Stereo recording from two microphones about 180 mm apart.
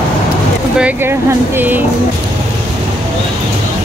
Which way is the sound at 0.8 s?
10° right (ahead or behind).